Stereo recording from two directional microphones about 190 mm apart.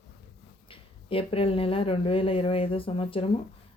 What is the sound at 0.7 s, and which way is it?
Speech, 30° left (ahead or behind).